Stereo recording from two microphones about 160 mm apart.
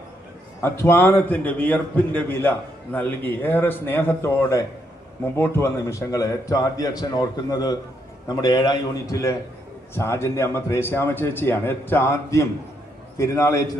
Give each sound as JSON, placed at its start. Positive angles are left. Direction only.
{"t": 0.6, "sound": "a man's voice", "side_deg": 15}